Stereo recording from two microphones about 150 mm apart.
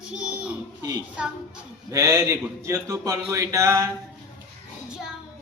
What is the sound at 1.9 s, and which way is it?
Speech, 20° right (ahead or behind).